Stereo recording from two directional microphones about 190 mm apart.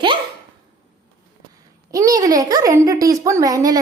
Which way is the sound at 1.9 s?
20° right (ahead or behind).